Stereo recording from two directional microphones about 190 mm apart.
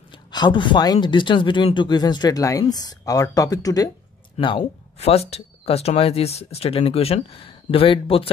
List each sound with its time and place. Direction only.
0.1 s speech: 25° left (ahead or behind)